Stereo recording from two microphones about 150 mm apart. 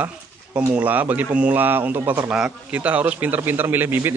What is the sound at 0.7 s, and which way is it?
Speech, 10° right (ahead or behind).